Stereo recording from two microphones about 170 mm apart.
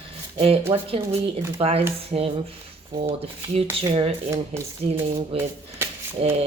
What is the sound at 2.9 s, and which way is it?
Speech, 20° right (ahead or behind).